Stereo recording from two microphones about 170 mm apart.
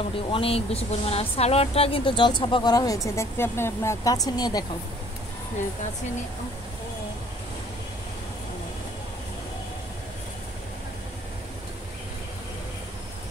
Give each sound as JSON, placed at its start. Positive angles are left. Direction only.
{"t": 0.3, "sound": "speech", "side_deg": 35}